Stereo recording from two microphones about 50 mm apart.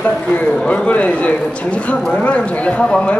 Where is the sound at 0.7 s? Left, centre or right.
Left.